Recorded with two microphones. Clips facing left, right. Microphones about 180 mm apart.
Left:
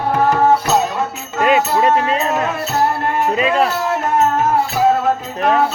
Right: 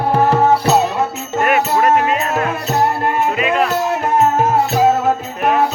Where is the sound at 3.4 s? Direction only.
30° left (ahead or behind).